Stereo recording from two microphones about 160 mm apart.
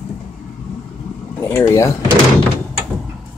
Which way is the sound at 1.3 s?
15° left (ahead or behind).